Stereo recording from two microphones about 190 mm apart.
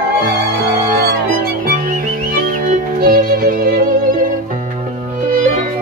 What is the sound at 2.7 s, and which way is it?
Music, 50° right (ahead or behind).